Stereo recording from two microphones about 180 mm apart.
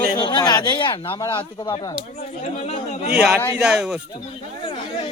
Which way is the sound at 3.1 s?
5° right (ahead or behind).